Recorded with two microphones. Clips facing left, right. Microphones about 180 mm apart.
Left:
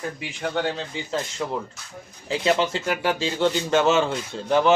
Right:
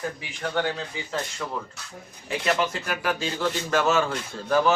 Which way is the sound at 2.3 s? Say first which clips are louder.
Left 3 dB; 30° left (ahead or behind).